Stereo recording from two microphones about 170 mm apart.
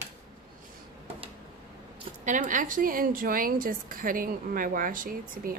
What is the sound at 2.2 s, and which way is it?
A woman's voice, 50° right (ahead or behind).